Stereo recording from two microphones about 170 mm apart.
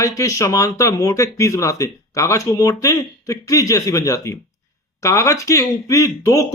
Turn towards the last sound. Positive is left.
turn(degrees=20)  # may be behind; listen again after turning